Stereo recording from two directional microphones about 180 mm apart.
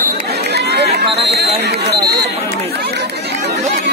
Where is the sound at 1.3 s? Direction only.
65° right (ahead or behind).